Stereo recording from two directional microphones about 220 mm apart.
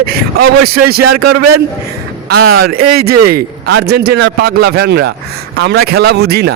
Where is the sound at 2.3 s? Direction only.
45° right (ahead or behind).